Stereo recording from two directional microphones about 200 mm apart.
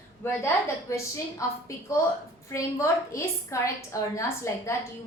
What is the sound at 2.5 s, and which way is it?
A woman's voice, 15° left (ahead or behind).